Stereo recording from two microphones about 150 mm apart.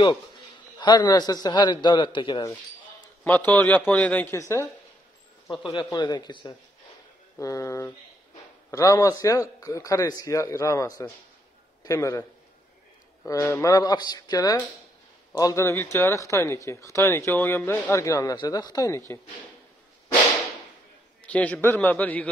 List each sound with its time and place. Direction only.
0.7 s speech: 30° left (ahead or behind)
3.3 s a man's voice: 10° left (ahead or behind)
5.5 s speech: 30° left (ahead or behind)
21.2 s a man's voice: 10° left (ahead or behind)